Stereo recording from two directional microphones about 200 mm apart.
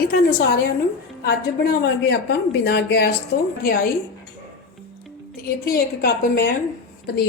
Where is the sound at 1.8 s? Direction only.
60° left (ahead or behind).